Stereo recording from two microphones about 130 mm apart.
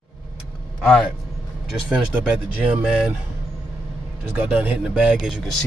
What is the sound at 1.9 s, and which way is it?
Speech, 5° right (ahead or behind).